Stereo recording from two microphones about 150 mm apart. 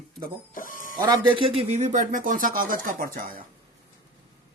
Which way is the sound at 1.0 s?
30° right (ahead or behind).